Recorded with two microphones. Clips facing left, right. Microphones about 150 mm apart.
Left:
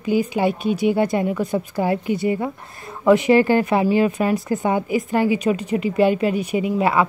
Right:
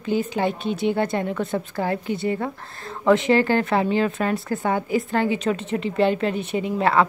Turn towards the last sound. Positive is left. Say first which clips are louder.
# left 1 dB
turn(degrees=10)  # may be behind; listen again after turning